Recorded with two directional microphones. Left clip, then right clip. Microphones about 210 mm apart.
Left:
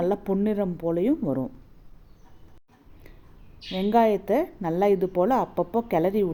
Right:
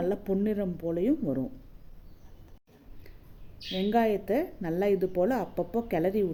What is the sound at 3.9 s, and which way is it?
A woman's voice, 15° left (ahead or behind).